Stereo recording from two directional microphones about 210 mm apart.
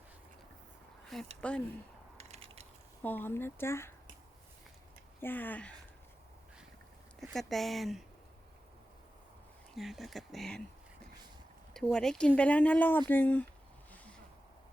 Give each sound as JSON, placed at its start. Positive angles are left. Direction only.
{"t": 1.4, "sound": "speech", "side_deg": 5}
{"t": 2.1, "sound": "mechanisms", "side_deg": -30}
{"t": 3.0, "sound": "speech", "side_deg": 10}
{"t": 5.2, "sound": "speech", "side_deg": 10}
{"t": 7.2, "sound": "speech", "side_deg": 0}
{"t": 9.7, "sound": "speech", "side_deg": 0}